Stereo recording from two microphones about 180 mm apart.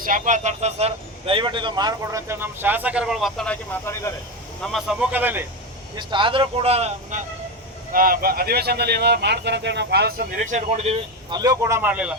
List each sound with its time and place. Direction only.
0.0 s speech: 45° right (ahead or behind); by 4.1 s 10° left (ahead or behind)
4.6 s speech: centre (ahead or behind)
6.0 s speech: 25° right (ahead or behind)
7.9 s speech: 55° right (ahead or behind); by 11.3 s 35° right (ahead or behind)
11.3 s speech: 20° right (ahead or behind)